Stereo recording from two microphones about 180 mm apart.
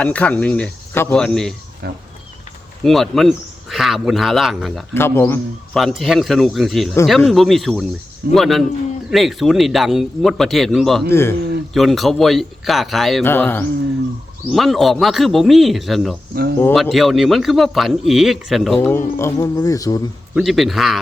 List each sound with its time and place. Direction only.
0.0 s speech: 5° left (ahead or behind)
1.8 s speech: 65° right (ahead or behind)
2.8 s a man's voice: centre (ahead or behind)
4.9 s a man's voice: 10° left (ahead or behind)
11.1 s speech: 15° left (ahead or behind)
11.7 s a man's voice: centre (ahead or behind)
13.2 s speech: 10° left (ahead or behind)
14.5 s a man's voice: centre (ahead or behind)
16.3 s speech: 60° right (ahead or behind)
16.9 s a man's voice: centre (ahead or behind); by 20.0 s 20° left (ahead or behind)
20.3 s a man's voice: centre (ahead or behind)